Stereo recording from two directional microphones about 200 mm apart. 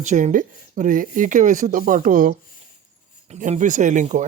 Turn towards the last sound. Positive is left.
turn(degrees=-40)  # may be behind; listen again after turning